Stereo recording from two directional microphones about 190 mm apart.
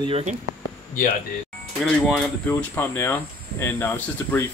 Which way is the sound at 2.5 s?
10° left (ahead or behind).